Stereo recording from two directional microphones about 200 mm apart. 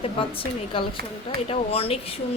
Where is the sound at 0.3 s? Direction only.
25° left (ahead or behind).